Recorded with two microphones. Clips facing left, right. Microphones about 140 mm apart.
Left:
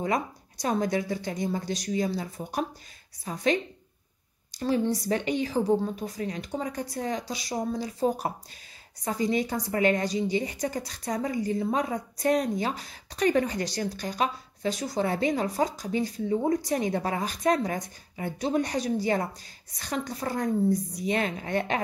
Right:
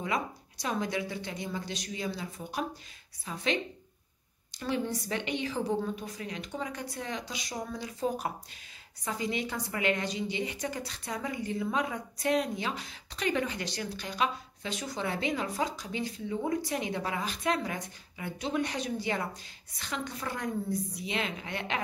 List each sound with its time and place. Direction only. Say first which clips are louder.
0.0 s a woman's voice: left 5 dB; 40° left (ahead or behind)
4.6 s a woman's voice: left 6 dB; 35° left (ahead or behind)